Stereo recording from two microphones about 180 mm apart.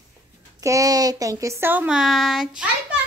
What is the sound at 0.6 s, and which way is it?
A child's voice, 20° right (ahead or behind).